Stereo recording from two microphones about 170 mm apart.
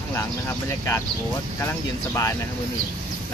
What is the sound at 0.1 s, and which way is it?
Speech, 15° left (ahead or behind).